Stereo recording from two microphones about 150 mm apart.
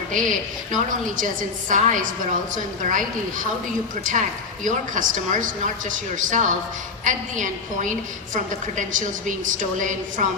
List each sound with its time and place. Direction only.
0.1 s a woman's voice: 60° right (ahead or behind)